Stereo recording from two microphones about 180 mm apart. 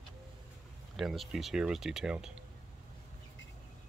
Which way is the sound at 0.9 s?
Centre (ahead or behind).